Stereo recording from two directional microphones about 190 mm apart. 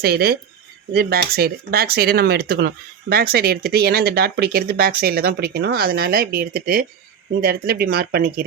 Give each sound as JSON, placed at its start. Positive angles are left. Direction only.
{"t": 0.0, "sound": "speech", "side_deg": -55}